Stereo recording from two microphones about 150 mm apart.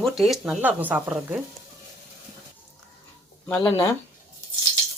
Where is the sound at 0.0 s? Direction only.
Centre (ahead or behind).